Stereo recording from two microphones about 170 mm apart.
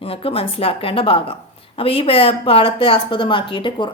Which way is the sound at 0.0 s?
35° left (ahead or behind).